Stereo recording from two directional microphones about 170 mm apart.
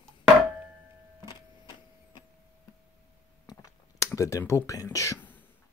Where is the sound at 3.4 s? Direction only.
20° left (ahead or behind).